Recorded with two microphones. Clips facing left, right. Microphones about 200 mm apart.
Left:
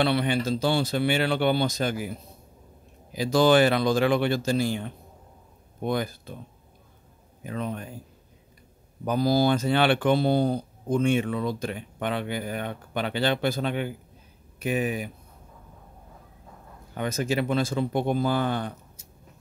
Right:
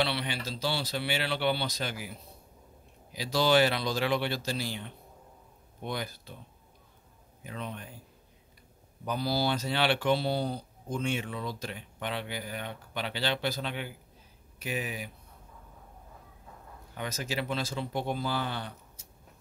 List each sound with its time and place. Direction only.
0.0 s speech: 50° left (ahead or behind)
7.4 s speech: 45° left (ahead or behind)
9.0 s speech: 45° left (ahead or behind)
16.9 s speech: 55° left (ahead or behind)